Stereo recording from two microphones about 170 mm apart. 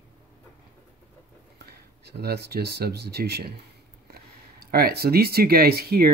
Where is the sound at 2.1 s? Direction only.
70° right (ahead or behind).